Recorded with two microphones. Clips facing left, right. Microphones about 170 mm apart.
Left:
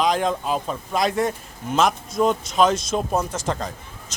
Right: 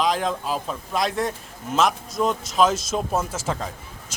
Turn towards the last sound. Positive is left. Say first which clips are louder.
# left 1 dB
turn(degrees=-5)  # may be behind; listen again after turning